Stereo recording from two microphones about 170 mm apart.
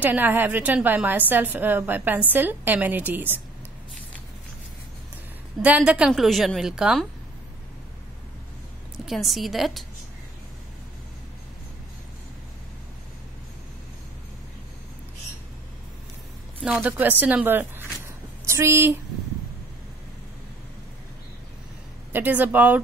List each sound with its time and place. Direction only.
0.0 s a woman's voice: 10° right (ahead or behind)
5.6 s a woman's voice: 10° right (ahead or behind)
9.0 s a woman's voice: centre (ahead or behind)
16.6 s a woman's voice: 10° right (ahead or behind)
22.1 s a woman's voice: 10° right (ahead or behind)